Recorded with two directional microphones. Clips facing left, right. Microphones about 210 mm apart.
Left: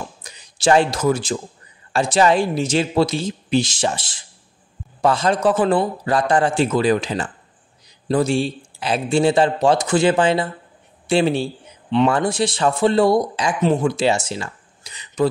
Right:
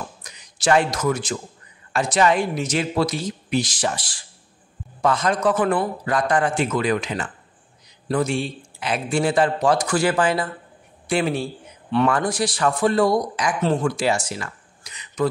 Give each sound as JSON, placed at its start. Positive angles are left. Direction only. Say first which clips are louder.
{"t": 0.2, "sound": "a man's voice", "louder": "left 6 dB", "side_deg": 30}